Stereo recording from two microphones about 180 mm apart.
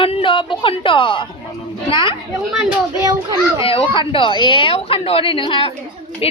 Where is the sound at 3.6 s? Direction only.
30° left (ahead or behind).